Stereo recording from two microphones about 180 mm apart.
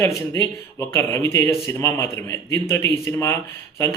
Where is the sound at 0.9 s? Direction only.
15° left (ahead or behind).